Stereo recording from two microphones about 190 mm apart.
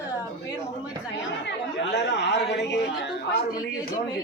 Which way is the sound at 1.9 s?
65° left (ahead or behind).